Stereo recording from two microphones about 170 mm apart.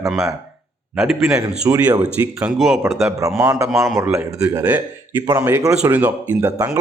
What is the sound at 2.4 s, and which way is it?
Speech, centre (ahead or behind).